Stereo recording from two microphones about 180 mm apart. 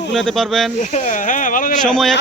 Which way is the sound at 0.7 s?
45° left (ahead or behind).